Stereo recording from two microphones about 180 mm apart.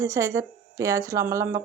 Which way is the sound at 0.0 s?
15° right (ahead or behind).